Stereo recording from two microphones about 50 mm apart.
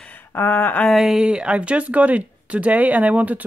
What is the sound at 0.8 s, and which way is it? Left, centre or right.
Speech, centre.